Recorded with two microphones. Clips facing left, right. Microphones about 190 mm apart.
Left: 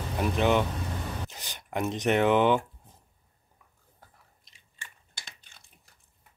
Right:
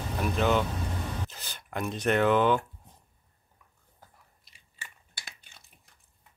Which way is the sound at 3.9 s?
5° right (ahead or behind).